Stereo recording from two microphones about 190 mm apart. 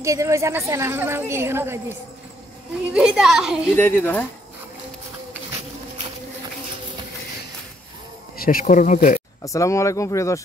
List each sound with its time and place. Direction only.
0.0 s a woman's voice: 15° right (ahead or behind)
3.7 s speech: 10° left (ahead or behind)
8.4 s speech: 50° left (ahead or behind)
9.4 s speech: 15° left (ahead or behind)